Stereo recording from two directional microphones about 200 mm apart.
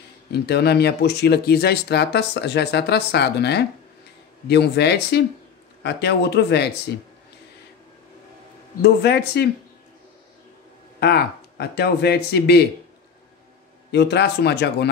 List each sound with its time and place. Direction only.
0.3 s speech: 55° left (ahead or behind)
8.8 s speech: 55° left (ahead or behind)
11.0 s speech: 50° left (ahead or behind)
13.9 s speech: 55° left (ahead or behind)